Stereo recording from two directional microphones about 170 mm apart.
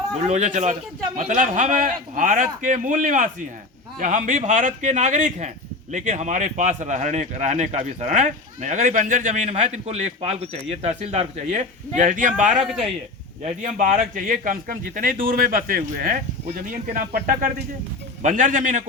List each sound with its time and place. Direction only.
0.3 s speech: 45° right (ahead or behind)
13.4 s speech: 50° right (ahead or behind)